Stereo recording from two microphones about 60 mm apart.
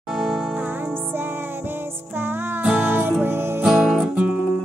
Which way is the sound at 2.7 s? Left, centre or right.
Right.